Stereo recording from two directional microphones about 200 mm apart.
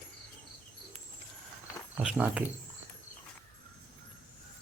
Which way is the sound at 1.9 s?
5° right (ahead or behind).